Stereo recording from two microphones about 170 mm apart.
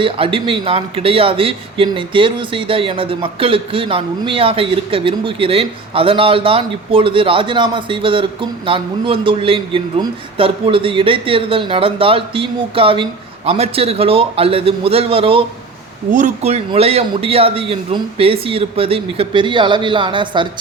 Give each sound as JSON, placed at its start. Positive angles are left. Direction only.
{"t": 0.0, "sound": "speech", "side_deg": -30}
{"t": 16.1, "sound": "speech", "side_deg": -45}